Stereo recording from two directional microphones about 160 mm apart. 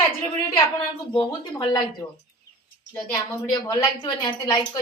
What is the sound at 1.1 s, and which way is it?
A woman's voice, 25° left (ahead or behind).